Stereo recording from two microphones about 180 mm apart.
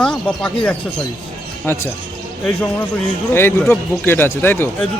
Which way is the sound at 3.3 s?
15° left (ahead or behind).